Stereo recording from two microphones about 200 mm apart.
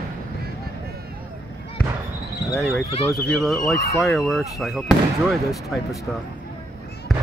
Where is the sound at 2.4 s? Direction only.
Centre (ahead or behind).